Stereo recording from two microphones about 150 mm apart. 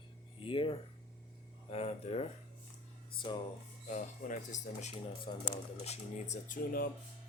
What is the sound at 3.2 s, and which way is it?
Speech, 30° left (ahead or behind).